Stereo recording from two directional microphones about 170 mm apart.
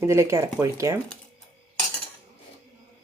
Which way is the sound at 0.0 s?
15° right (ahead or behind).